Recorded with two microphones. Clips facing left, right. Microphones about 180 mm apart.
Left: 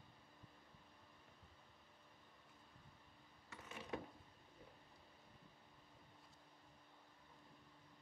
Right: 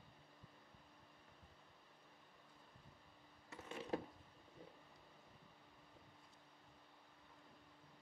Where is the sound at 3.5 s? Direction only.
30° right (ahead or behind).